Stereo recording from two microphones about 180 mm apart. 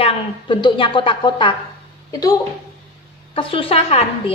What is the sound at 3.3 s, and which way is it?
A woman's voice, 30° left (ahead or behind).